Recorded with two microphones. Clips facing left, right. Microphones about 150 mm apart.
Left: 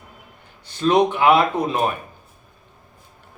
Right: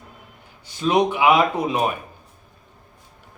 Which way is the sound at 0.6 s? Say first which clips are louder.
Left 2 dB; 10° right (ahead or behind).